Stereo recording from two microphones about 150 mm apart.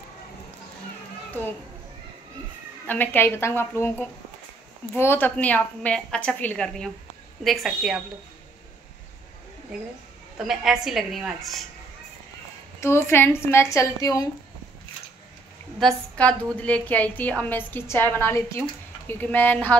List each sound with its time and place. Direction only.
2.9 s a woman's voice: 10° left (ahead or behind)
10.3 s a woman's voice: 5° right (ahead or behind)
12.8 s a woman's voice: 15° left (ahead or behind)
15.8 s a woman's voice: 10° left (ahead or behind)